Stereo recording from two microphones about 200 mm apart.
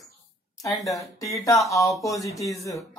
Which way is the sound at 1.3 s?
15° left (ahead or behind).